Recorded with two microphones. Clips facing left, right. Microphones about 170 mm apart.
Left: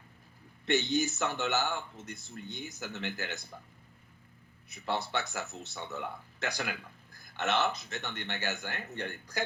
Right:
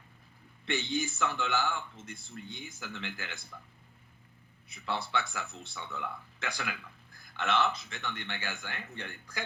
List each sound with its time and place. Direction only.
0.6 s speech: 40° left (ahead or behind)
4.7 s speech: 40° left (ahead or behind)